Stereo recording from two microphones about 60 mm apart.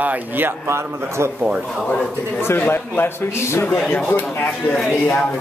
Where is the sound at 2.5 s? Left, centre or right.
Left.